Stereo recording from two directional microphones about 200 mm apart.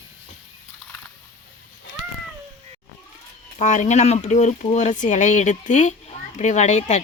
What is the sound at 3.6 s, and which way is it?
Speech, 35° left (ahead or behind).